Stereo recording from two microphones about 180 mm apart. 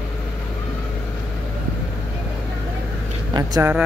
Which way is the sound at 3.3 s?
20° right (ahead or behind).